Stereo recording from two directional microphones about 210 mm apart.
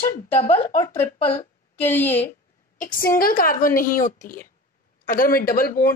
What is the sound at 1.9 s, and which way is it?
Speech, 10° left (ahead or behind).